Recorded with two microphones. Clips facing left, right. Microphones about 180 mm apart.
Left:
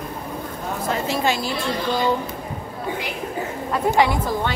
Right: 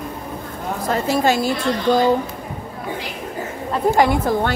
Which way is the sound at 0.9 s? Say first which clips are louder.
Right 5 dB; 45° right (ahead or behind).